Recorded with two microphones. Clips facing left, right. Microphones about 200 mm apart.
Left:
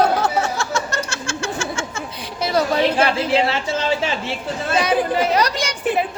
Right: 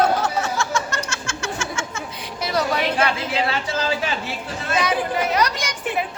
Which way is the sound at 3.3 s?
30° left (ahead or behind).